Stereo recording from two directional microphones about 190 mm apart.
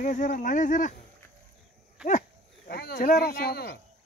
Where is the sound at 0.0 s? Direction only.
40° left (ahead or behind).